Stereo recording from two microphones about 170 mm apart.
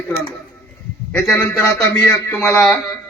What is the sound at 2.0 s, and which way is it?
Speech, 15° left (ahead or behind).